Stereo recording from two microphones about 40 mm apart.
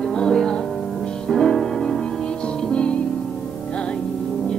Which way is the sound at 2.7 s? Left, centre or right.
Left.